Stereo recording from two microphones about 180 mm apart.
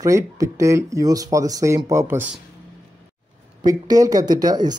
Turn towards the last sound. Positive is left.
turn(degrees=-20)  # may be behind; listen again after turning